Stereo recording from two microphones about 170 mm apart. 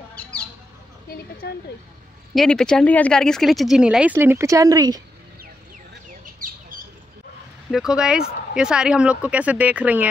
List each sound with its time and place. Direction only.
0.1 s bird: 5° left (ahead or behind)
1.4 s speech: 75° left (ahead or behind)
2.3 s speech: 5° left (ahead or behind); by 5.0 s 20° right (ahead or behind)
6.4 s a sound: 55° right (ahead or behind)
7.7 s speech: 5° right (ahead or behind)